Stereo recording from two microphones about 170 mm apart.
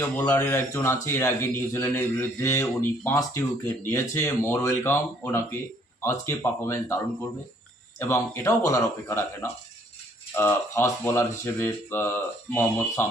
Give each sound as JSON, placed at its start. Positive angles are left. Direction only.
{"t": 0.3, "sound": "a man's voice", "side_deg": 15}